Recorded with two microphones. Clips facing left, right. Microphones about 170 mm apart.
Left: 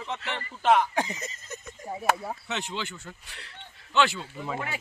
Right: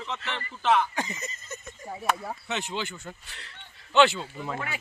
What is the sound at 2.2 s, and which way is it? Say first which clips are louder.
Speech: even; centre (ahead or behind).